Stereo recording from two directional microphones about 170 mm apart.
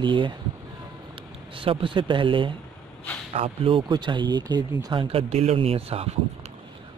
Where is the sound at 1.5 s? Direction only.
30° right (ahead or behind).